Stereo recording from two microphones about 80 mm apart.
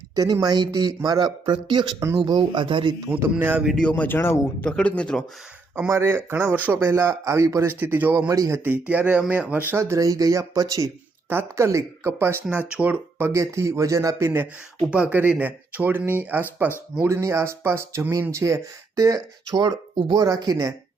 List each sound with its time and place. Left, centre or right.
0.2 s speech: right
0.7 s speech: right
3.2 s speech: right
3.8 s speech: centre
4.6 s speech: centre
5.9 s speech: right
7.8 s speech: right
8.3 s speech: right
8.7 s speech: centre
9.7 s speech: right
11.3 s speech: right
12.5 s speech: centre; by 14.3 s right
14.8 s speech: centre
17.0 s speech: right